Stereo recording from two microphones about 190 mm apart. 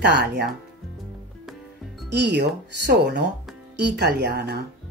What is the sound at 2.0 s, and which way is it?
Speech, 65° right (ahead or behind).